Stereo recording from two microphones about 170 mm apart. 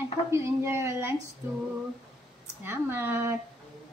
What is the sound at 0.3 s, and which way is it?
Speech, 15° right (ahead or behind).